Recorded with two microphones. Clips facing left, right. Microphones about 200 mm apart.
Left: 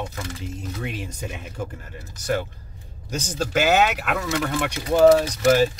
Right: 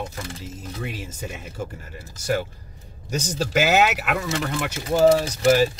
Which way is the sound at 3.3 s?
10° right (ahead or behind).